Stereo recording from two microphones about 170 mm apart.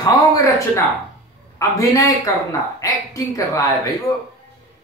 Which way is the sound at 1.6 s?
20° left (ahead or behind).